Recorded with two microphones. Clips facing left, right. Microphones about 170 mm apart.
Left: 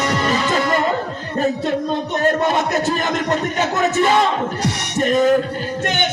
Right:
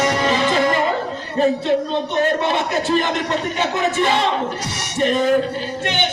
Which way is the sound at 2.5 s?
45° left (ahead or behind).